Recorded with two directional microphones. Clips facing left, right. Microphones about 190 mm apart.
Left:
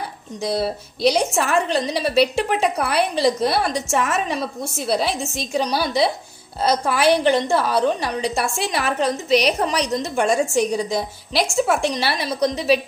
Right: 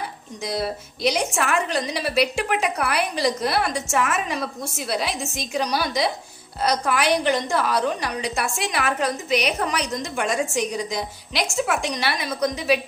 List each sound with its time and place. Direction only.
0.4 s a woman's voice: 30° left (ahead or behind)